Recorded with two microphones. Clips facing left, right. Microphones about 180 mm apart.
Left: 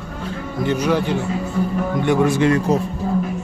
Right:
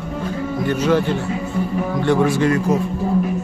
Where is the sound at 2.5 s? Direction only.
30° left (ahead or behind).